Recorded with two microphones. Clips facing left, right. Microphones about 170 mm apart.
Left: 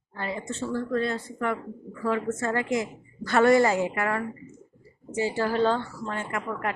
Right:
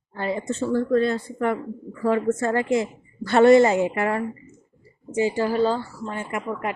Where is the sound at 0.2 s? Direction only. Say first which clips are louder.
Right 6 dB; 30° right (ahead or behind).